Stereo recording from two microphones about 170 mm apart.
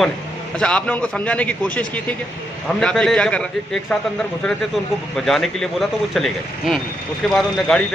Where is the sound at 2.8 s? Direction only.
5° left (ahead or behind).